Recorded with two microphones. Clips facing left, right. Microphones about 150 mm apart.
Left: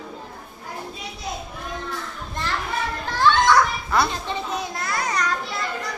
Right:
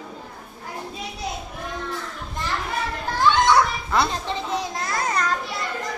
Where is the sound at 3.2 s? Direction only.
20° right (ahead or behind).